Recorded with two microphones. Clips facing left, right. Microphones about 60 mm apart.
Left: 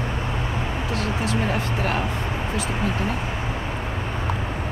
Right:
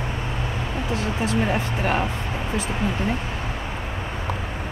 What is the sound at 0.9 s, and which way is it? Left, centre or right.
Speech, centre.